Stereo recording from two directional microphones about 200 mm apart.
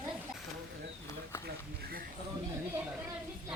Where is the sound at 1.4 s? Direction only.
50° right (ahead or behind).